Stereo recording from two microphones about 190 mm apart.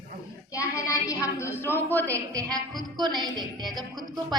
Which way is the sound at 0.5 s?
15° left (ahead or behind).